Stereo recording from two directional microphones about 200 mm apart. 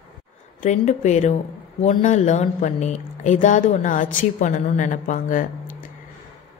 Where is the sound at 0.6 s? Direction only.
35° left (ahead or behind).